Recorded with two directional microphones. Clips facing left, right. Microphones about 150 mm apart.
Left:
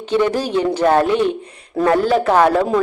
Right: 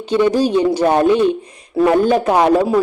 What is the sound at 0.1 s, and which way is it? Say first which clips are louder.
A man's voice: right 3 dB; 15° right (ahead or behind).